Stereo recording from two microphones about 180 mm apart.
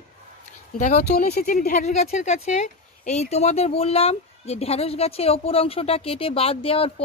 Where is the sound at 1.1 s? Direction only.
55° left (ahead or behind).